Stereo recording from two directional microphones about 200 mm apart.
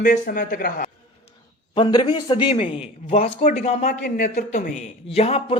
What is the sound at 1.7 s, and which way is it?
A man's voice, 20° left (ahead or behind).